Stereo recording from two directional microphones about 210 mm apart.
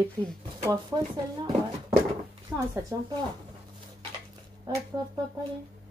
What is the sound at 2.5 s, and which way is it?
Speech, 15° right (ahead or behind).